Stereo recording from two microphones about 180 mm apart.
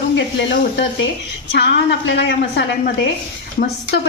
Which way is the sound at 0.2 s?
90° left.